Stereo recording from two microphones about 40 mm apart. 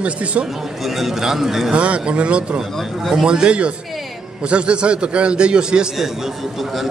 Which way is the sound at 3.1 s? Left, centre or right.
Centre.